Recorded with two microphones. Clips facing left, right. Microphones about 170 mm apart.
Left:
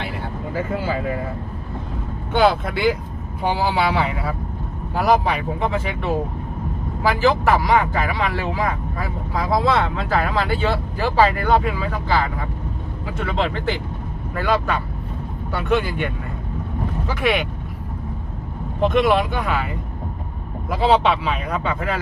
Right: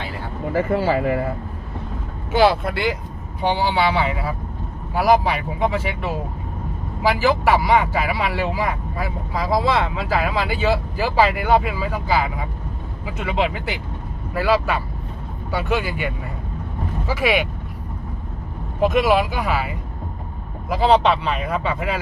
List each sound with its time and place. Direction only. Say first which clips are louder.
0.5 s speech: right 5 dB; 70° right (ahead or behind)
2.3 s speech: right 1 dB; centre (ahead or behind)
7.2 s speech: left 1 dB; 5° right (ahead or behind)
18.8 s speech: even; 5° right (ahead or behind)